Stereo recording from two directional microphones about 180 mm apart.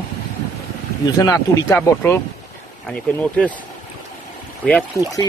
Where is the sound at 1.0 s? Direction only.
20° left (ahead or behind).